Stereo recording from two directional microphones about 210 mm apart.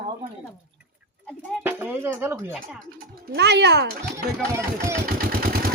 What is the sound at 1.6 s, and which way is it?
Speech, 10° right (ahead or behind).